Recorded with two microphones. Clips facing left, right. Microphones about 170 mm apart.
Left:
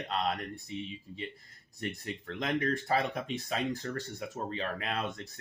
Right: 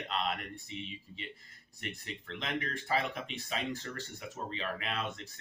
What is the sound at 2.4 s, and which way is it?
Speech, 40° left (ahead or behind).